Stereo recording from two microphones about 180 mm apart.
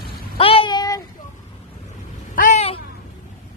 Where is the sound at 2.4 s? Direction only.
40° left (ahead or behind).